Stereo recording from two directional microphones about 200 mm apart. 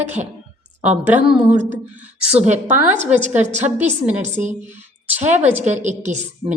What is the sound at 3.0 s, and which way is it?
A woman's voice, 35° right (ahead or behind).